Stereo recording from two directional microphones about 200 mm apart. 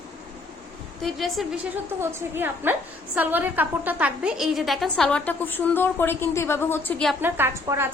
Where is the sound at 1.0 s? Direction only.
Centre (ahead or behind).